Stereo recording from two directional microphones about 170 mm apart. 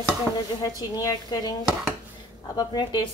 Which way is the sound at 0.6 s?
20° left (ahead or behind).